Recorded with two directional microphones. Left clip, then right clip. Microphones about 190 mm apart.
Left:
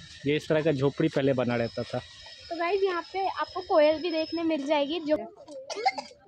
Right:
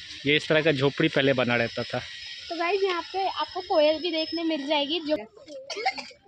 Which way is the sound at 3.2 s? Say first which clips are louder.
Right 1 dB; 20° right (ahead or behind).